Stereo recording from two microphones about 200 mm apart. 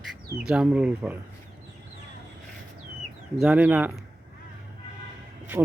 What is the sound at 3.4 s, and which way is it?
Speech, 5° right (ahead or behind).